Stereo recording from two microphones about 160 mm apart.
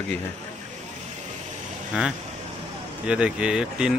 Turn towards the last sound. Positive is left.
turn(degrees=-5)  # may be behind; listen again after turning